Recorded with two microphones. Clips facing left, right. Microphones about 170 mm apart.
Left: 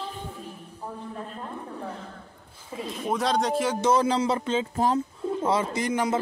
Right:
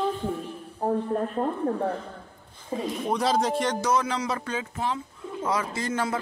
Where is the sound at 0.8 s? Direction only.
55° right (ahead or behind).